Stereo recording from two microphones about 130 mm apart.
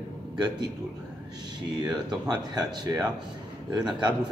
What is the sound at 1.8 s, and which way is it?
Speech, 30° right (ahead or behind).